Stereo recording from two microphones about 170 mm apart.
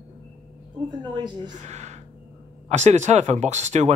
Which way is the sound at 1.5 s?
45° right (ahead or behind).